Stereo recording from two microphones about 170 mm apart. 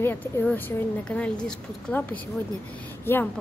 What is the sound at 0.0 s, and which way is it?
A woman's voice, 10° left (ahead or behind).